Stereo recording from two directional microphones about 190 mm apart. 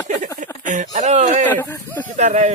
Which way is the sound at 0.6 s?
45° right (ahead or behind).